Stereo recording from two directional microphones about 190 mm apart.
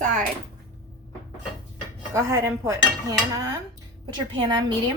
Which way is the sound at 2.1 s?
15° right (ahead or behind).